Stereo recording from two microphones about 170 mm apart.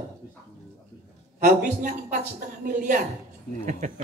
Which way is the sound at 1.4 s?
50° right (ahead or behind).